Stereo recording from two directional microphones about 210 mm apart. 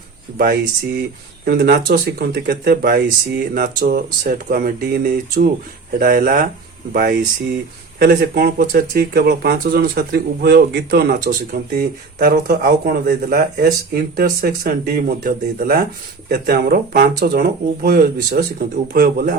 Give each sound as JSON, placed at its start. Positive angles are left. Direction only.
{"t": 0.3, "sound": "speech", "side_deg": -45}